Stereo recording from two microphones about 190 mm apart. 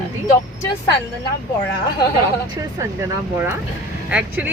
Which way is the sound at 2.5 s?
15° right (ahead or behind).